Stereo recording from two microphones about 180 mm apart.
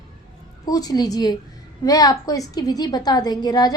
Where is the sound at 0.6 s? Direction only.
20° left (ahead or behind).